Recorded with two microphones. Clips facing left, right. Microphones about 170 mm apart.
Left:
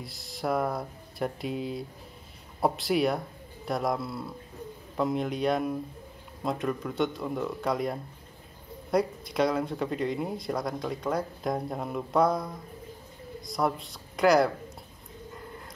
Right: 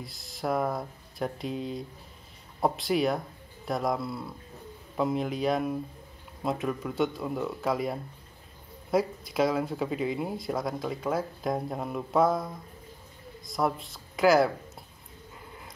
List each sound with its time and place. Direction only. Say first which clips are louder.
0.0 s speech: left 1 dB; centre (ahead or behind)